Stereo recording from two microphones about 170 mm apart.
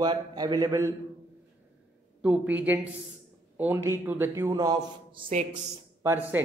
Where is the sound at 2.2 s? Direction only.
10° right (ahead or behind); by 5.2 s 30° right (ahead or behind).